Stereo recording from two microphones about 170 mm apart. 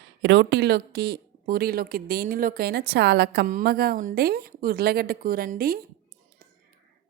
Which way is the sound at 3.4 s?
60° right (ahead or behind).